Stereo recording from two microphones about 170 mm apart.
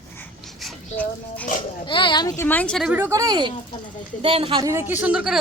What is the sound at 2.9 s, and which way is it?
Speech, 15° right (ahead or behind).